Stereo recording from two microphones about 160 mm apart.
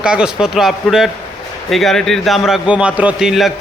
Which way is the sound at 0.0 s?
5° right (ahead or behind).